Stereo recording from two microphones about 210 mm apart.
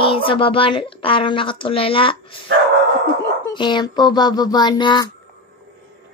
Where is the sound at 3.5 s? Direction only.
20° left (ahead or behind).